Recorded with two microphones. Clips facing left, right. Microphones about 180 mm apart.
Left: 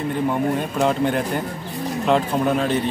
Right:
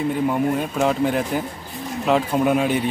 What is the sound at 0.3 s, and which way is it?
Speech, 5° right (ahead or behind).